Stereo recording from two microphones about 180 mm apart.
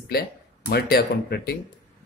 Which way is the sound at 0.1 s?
60° left (ahead or behind).